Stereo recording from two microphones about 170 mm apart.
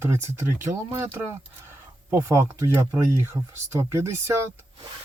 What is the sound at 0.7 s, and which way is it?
Speech, 30° right (ahead or behind).